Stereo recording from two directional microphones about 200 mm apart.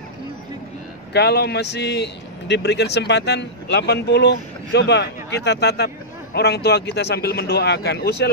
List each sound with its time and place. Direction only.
1.1 s a man's voice: 55° left (ahead or behind)